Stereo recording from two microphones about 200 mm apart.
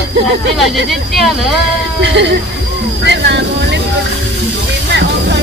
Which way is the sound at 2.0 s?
60° right (ahead or behind).